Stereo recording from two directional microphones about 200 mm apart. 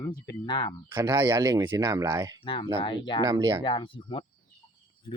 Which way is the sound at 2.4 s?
25° left (ahead or behind).